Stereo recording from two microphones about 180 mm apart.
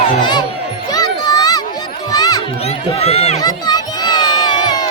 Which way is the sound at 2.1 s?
20° left (ahead or behind).